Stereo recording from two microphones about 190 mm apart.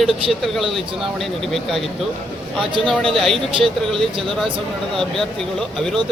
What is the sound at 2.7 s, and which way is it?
Speech, 25° right (ahead or behind).